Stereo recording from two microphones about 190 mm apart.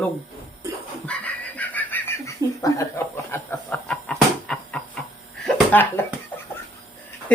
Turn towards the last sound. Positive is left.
turn(degrees=5)  # may be behind; listen again after turning